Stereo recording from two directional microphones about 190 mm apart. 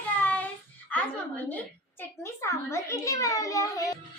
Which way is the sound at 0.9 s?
10° left (ahead or behind).